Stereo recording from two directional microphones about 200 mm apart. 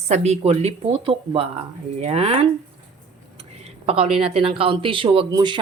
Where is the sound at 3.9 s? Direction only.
30° right (ahead or behind).